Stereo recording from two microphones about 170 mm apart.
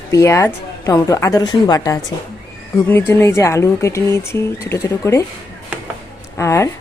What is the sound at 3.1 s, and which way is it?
Speech, 15° left (ahead or behind).